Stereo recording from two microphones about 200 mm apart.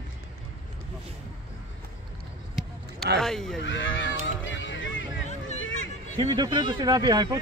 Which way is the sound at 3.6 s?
70° left (ahead or behind).